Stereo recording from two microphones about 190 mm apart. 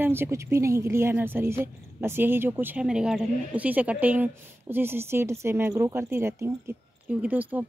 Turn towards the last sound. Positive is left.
turn(degrees=-10)  # may be behind; listen again after turning